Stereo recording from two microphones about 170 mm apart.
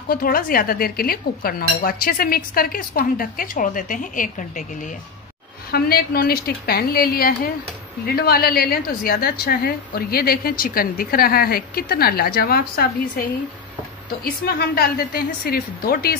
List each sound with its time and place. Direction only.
0.1 s a woman's voice: 55° left (ahead or behind)
5.7 s a woman's voice: 65° left (ahead or behind)
14.2 s a woman's voice: 65° left (ahead or behind)